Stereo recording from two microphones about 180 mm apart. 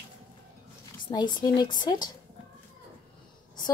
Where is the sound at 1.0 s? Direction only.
25° left (ahead or behind).